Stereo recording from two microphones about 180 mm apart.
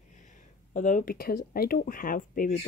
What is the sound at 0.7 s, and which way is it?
Speech, 45° left (ahead or behind).